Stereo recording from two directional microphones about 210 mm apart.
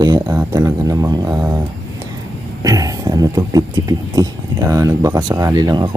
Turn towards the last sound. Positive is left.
turn(degrees=-20)  # may be behind; listen again after turning